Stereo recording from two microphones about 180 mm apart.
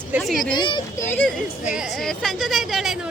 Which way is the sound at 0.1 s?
Centre (ahead or behind).